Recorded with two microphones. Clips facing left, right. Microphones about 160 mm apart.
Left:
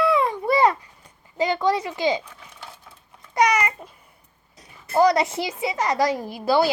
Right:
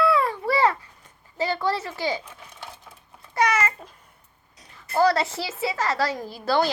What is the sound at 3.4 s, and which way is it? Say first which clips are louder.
Babbling: left 3 dB; 15° left (ahead or behind).